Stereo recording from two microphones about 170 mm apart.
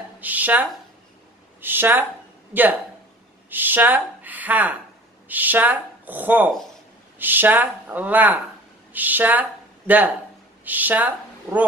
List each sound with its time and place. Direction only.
0.2 s a woman's voice: 10° right (ahead or behind)